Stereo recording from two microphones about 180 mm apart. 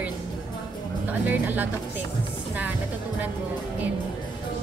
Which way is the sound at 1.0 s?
10° right (ahead or behind).